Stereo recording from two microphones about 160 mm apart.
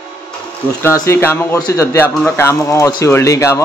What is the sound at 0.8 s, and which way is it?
Speech, 15° left (ahead or behind).